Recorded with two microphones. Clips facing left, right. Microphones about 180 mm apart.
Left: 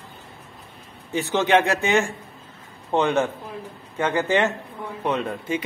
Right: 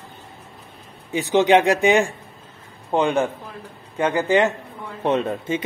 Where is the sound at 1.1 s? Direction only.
15° right (ahead or behind).